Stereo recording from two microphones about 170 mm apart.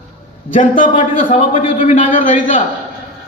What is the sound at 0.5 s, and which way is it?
A man's voice, 50° left (ahead or behind).